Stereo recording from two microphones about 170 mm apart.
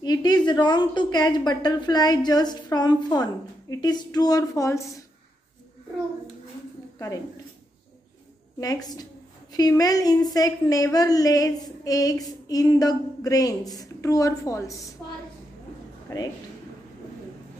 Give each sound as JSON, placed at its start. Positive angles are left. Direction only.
{"t": 0.0, "sound": "speech", "side_deg": 25}
{"t": 8.5, "sound": "speech", "side_deg": 20}
{"t": 16.1, "sound": "a man's voice", "side_deg": 20}